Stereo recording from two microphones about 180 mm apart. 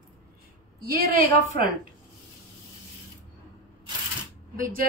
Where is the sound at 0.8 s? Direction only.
55° right (ahead or behind).